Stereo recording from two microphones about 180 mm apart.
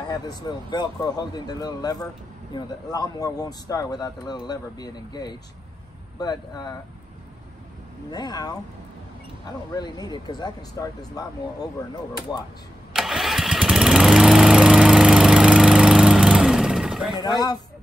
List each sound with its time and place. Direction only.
0.0 s speech: 20° left (ahead or behind)
8.1 s speech: 20° left (ahead or behind)
9.8 s speech: 25° left (ahead or behind)
12.9 s lawn mower: centre (ahead or behind)
17.2 s speech: 25° left (ahead or behind)